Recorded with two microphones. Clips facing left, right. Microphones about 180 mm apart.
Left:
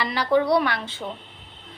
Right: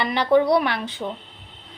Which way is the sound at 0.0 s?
25° right (ahead or behind).